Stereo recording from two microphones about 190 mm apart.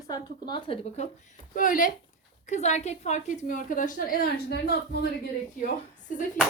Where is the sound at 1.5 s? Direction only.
45° left (ahead or behind).